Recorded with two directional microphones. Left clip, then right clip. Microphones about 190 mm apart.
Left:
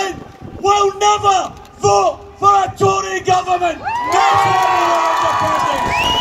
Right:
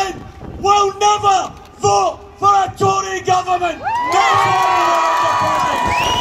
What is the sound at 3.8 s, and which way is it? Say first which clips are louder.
Crowd: even; 45° right (ahead or behind).